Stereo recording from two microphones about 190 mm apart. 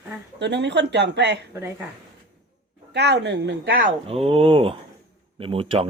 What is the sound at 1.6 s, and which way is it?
Speech, 15° right (ahead or behind).